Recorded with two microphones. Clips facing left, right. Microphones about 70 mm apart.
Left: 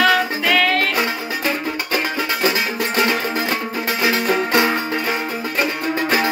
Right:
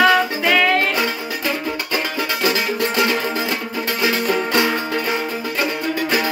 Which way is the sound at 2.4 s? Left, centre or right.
Left.